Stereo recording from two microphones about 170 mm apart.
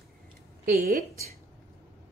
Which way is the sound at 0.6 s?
65° right (ahead or behind).